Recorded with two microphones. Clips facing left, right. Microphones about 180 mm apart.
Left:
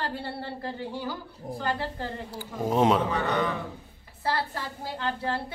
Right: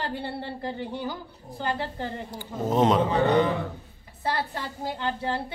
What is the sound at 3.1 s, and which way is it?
A man's voice, 30° right (ahead or behind).